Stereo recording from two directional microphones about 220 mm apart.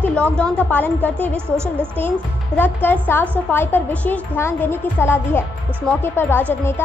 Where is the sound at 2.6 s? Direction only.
10° left (ahead or behind).